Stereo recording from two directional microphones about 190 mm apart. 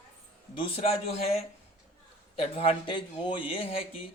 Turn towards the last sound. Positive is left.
turn(degrees=30)  # may be behind; listen again after turning